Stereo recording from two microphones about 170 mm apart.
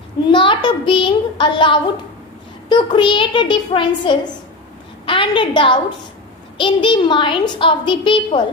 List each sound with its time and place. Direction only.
0.3 s a child's voice: 30° left (ahead or behind)